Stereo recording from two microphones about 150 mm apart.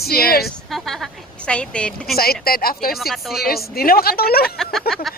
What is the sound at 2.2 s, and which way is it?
Speech, 90° left.